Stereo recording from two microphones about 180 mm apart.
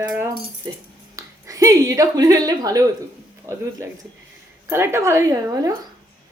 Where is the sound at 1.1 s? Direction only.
20° right (ahead or behind).